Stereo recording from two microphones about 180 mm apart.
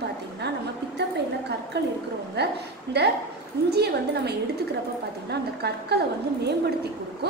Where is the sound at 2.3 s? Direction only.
65° right (ahead or behind).